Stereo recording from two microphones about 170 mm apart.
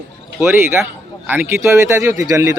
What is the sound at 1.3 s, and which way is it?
Speech, 15° right (ahead or behind).